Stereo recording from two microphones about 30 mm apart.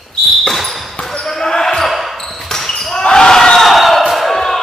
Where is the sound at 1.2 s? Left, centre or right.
Centre.